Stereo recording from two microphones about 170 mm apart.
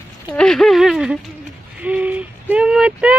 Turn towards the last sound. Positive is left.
turn(degrees=-5)  # may be behind; listen again after turning